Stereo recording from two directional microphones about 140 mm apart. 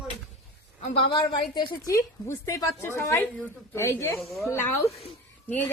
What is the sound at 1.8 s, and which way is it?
A woman's voice, 20° left (ahead or behind).